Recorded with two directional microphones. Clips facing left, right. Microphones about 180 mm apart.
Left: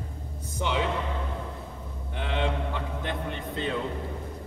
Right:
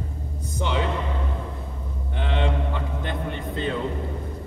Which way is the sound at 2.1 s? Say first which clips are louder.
Right 3 dB; 5° left (ahead or behind).